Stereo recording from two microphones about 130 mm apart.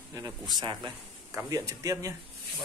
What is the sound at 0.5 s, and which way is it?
Speech, 35° right (ahead or behind).